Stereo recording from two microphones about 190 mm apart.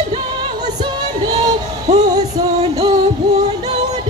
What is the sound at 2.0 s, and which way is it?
Music, 20° right (ahead or behind).